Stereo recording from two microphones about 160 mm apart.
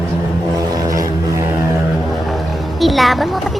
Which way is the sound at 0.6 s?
20° right (ahead or behind).